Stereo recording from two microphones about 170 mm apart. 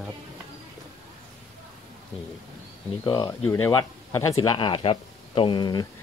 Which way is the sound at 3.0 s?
25° left (ahead or behind).